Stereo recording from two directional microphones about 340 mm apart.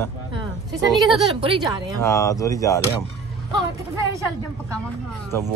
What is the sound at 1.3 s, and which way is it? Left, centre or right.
Speech, centre.